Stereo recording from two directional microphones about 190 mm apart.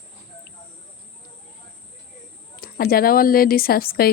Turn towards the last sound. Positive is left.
turn(degrees=50)  # may be behind; listen again after turning